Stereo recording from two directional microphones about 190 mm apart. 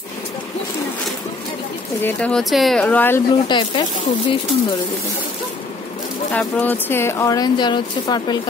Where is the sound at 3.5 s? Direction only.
25° left (ahead or behind).